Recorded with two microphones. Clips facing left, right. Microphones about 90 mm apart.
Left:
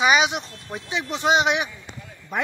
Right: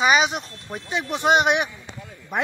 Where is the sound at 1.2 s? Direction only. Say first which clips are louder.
Right 1 dB; 55° right (ahead or behind).